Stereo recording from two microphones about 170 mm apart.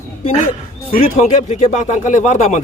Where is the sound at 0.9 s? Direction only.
50° left (ahead or behind).